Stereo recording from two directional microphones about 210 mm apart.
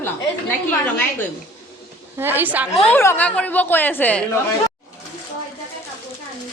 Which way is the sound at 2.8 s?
10° left (ahead or behind).